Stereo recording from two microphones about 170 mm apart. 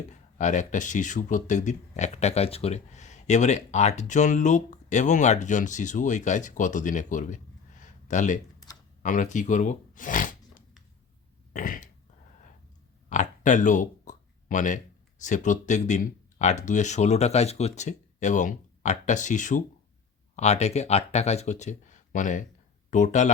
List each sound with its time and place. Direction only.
0.1 s speech: 45° left (ahead or behind)
7.8 s a sound: 45° left (ahead or behind)
9.0 s speech: 50° left (ahead or behind)
11.5 s throat clearing: 55° left (ahead or behind)
13.1 s a sound: 45° left (ahead or behind)
15.2 s speech: 45° left (ahead or behind)